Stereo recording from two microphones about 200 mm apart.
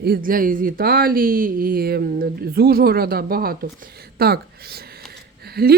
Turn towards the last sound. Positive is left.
turn(degrees=-50)  # may be behind; listen again after turning